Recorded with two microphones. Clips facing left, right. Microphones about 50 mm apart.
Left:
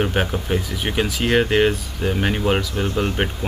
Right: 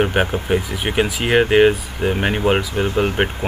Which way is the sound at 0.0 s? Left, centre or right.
Centre.